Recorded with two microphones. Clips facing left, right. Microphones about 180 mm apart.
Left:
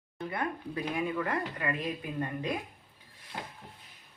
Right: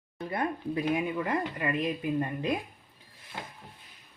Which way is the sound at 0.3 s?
25° right (ahead or behind).